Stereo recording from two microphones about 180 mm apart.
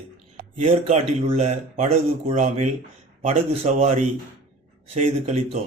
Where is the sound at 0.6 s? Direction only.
35° right (ahead or behind).